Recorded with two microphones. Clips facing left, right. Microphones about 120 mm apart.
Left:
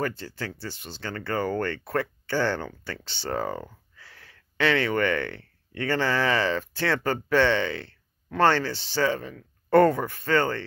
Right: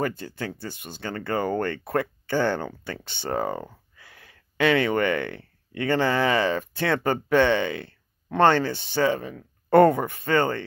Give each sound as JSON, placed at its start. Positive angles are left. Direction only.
{"t": 0.6, "sound": "speech", "side_deg": -50}
{"t": 1.0, "sound": "speech", "side_deg": -20}
{"t": 3.0, "sound": "speech", "side_deg": -50}
{"t": 3.3, "sound": "a sound", "side_deg": -20}
{"t": 4.6, "sound": "speech", "side_deg": -15}